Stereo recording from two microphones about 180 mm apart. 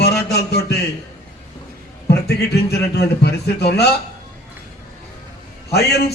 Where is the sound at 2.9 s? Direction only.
65° left (ahead or behind).